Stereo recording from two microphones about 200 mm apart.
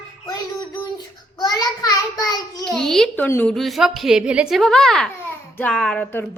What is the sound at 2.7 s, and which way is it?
A woman's voice, centre (ahead or behind).